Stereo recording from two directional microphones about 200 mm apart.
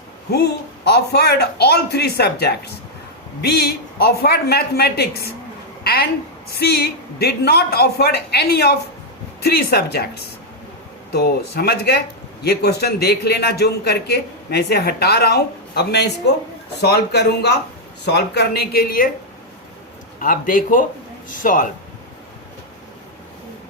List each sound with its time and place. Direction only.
0.3 s a man's voice: 55° left (ahead or behind)
5.8 s a sound: 50° left (ahead or behind)
6.5 s a man's voice: 50° left (ahead or behind)
11.1 s a man's voice: 55° left (ahead or behind)
20.1 s a man's voice: 45° left (ahead or behind)